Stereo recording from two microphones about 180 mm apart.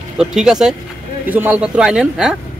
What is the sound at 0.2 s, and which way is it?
A man's voice, 5° right (ahead or behind).